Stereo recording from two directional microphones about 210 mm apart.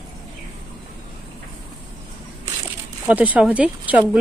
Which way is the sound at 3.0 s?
5° right (ahead or behind).